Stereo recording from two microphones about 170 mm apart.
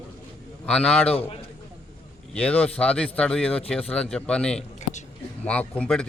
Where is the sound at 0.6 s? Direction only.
5° left (ahead or behind).